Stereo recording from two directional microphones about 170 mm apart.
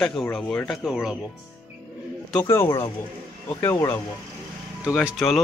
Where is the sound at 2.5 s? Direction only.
15° left (ahead or behind).